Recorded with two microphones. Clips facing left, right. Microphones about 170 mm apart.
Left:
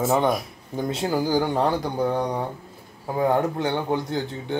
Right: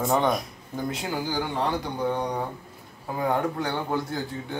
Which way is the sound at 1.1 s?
40° left (ahead or behind).